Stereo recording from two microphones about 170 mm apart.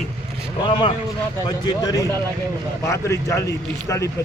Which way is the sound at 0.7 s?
30° left (ahead or behind).